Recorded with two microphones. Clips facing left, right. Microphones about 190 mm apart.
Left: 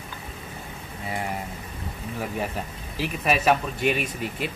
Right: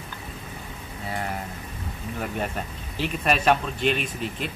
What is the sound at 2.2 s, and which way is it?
Speech, 5° left (ahead or behind).